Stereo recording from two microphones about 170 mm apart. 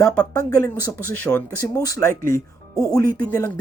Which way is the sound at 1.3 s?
15° left (ahead or behind).